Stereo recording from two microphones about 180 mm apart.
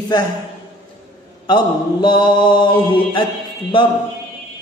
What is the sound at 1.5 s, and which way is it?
Mantra, 25° left (ahead or behind).